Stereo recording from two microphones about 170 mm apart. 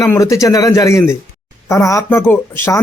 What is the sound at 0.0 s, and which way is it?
Speech, 20° left (ahead or behind).